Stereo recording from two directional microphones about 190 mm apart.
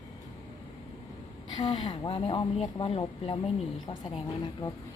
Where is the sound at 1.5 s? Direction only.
25° left (ahead or behind).